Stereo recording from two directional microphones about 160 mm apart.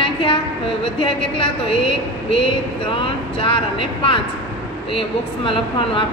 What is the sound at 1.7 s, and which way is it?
A woman's voice, 35° left (ahead or behind).